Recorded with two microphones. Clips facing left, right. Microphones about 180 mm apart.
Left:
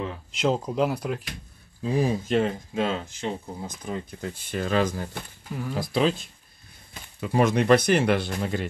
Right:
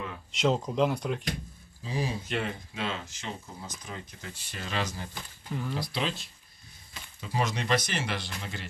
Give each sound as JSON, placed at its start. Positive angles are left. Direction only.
{"t": 0.3, "sound": "speech", "side_deg": 0}
{"t": 1.8, "sound": "speech", "side_deg": 55}
{"t": 6.9, "sound": "speech", "side_deg": 60}